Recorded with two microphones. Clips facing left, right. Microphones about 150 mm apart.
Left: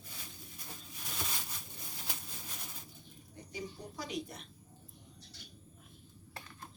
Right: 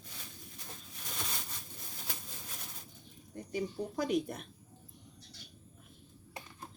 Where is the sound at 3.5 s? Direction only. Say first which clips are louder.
Right 8 dB; 55° right (ahead or behind).